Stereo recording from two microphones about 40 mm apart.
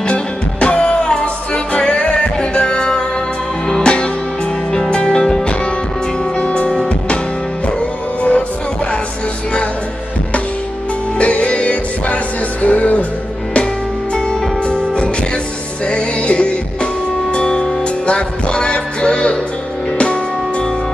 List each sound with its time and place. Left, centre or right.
0.1 s music: left
6.3 s music: left
8.2 s music: left
11.1 s music: left
14.1 s music: left